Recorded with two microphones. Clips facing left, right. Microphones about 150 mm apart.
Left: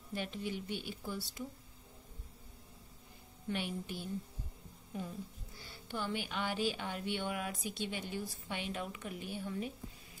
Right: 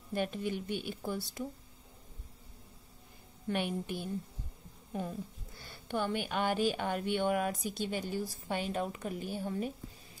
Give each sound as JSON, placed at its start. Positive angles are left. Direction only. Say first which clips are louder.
{"t": 0.1, "sound": "speech", "louder": "right 5 dB", "side_deg": -50}
{"t": 3.4, "sound": "a woman's voice", "louder": "right 5 dB", "side_deg": -55}
{"t": 5.7, "sound": "speech", "louder": "right 5 dB", "side_deg": -55}